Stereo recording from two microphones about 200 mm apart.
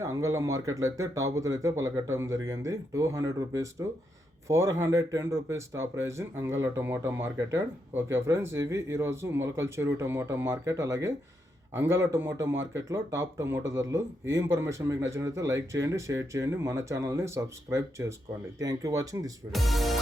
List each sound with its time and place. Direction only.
0.0 s speech: 15° right (ahead or behind)
19.5 s speech: centre (ahead or behind)